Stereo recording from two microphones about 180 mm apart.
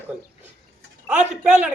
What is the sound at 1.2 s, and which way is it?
Speech, 40° right (ahead or behind).